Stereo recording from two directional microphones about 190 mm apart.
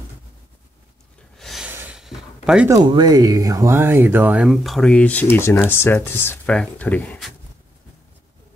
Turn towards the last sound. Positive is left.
turn(degrees=10)  # may be behind; listen again after turning